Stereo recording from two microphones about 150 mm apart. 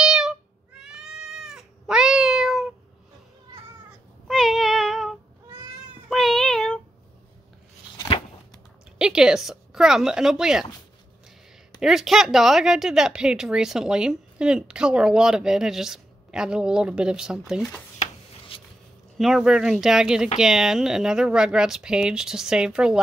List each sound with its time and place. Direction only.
0.0 s cat: 5° right (ahead or behind)
4.3 s child singing: centre (ahead or behind)
6.0 s cat: centre (ahead or behind)
8.9 s speech: 5° right (ahead or behind)
11.8 s speech: 5° right (ahead or behind)
18.5 s a sound: 35° left (ahead or behind)
19.1 s speech: 5° right (ahead or behind)